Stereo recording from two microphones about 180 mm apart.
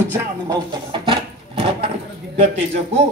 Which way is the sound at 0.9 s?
30° right (ahead or behind).